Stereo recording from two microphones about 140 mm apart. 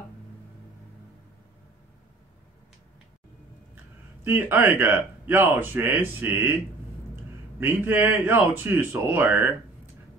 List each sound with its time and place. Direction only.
4.2 s speech: 15° right (ahead or behind)
7.6 s speech: 15° right (ahead or behind)